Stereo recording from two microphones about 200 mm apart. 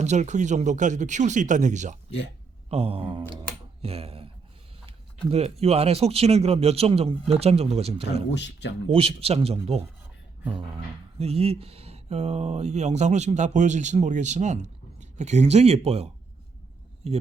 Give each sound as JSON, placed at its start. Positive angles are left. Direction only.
{"t": 0.0, "sound": "speech", "side_deg": -35}
{"t": 3.8, "sound": "a sound", "side_deg": -30}
{"t": 5.3, "sound": "speech", "side_deg": -30}
{"t": 8.3, "sound": "speech", "side_deg": 60}
{"t": 8.9, "sound": "speech", "side_deg": -30}
{"t": 11.2, "sound": "speech", "side_deg": -30}